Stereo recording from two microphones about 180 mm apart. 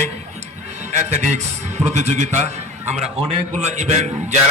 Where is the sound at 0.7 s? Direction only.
40° right (ahead or behind).